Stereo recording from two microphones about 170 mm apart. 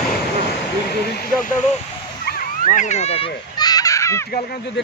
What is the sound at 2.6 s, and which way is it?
Speech, 45° left (ahead or behind).